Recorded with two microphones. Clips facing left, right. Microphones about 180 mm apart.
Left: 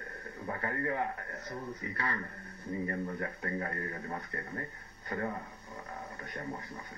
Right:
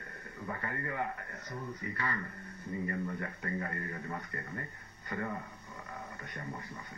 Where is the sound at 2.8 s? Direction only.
40° left (ahead or behind).